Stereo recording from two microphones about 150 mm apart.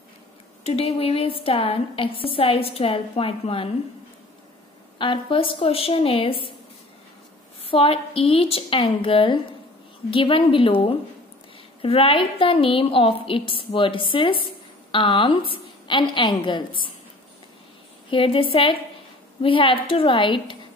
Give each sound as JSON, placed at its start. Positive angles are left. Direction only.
{"t": 0.7, "sound": "a woman's voice", "side_deg": 45}
{"t": 4.9, "sound": "a woman's voice", "side_deg": 35}
{"t": 7.6, "sound": "a woman's voice", "side_deg": 40}
{"t": 18.1, "sound": "a woman's voice", "side_deg": 35}